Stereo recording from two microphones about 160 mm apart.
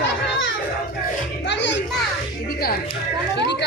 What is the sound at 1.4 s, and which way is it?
Music, 90° left.